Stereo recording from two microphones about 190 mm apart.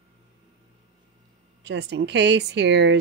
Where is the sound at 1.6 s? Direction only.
65° right (ahead or behind).